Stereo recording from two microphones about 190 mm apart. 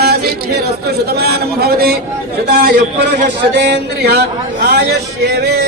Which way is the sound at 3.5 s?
60° right (ahead or behind).